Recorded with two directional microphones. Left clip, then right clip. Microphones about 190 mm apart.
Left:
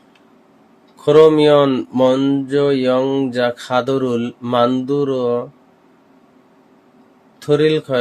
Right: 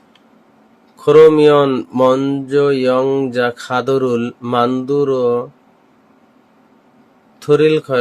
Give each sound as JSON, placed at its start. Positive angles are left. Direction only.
{"t": 1.0, "sound": "speech", "side_deg": -10}
{"t": 7.3, "sound": "a man's voice", "side_deg": -15}